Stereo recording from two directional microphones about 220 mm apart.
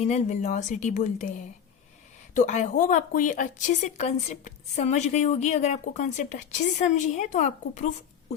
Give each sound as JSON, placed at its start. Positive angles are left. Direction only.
{"t": 0.0, "sound": "a woman's voice", "side_deg": 30}
{"t": 2.3, "sound": "a woman's voice", "side_deg": 30}